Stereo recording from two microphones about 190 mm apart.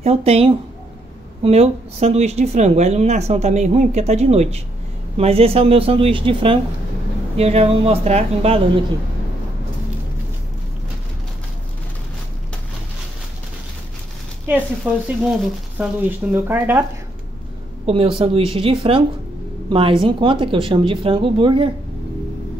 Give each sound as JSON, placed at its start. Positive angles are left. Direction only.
{"t": 0.0, "sound": "speech", "side_deg": -30}
{"t": 14.8, "sound": "speech", "side_deg": -5}
{"t": 17.8, "sound": "speech", "side_deg": -30}